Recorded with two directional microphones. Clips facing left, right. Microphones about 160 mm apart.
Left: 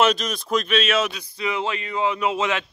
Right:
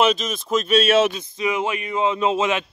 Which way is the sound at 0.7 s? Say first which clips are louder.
Right 8 dB; 25° right (ahead or behind).